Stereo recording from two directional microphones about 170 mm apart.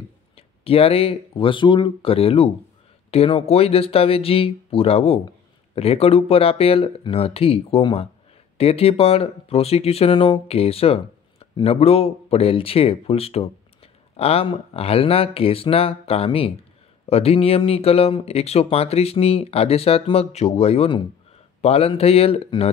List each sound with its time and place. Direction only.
0.7 s speech: 35° left (ahead or behind)